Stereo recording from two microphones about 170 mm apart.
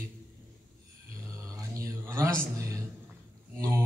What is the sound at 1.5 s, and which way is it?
Mantra, 20° right (ahead or behind).